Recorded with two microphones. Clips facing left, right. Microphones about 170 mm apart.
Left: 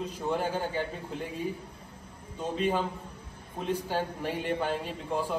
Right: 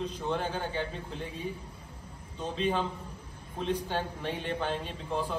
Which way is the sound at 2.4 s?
10° left (ahead or behind).